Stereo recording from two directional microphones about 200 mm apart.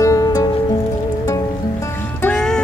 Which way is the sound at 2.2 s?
5° left (ahead or behind).